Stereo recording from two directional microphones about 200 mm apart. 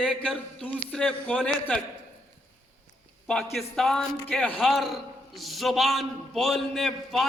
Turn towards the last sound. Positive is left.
turn(degrees=0)  # may be behind; listen again after turning